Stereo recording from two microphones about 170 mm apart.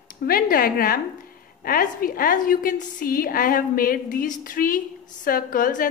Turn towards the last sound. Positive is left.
turn(degrees=55)  # may be behind; listen again after turning